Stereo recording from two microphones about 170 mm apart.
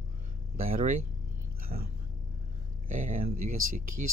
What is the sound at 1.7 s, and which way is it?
Speech, 40° right (ahead or behind).